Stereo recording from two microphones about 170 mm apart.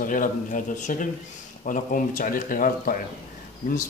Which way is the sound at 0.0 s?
50° left (ahead or behind).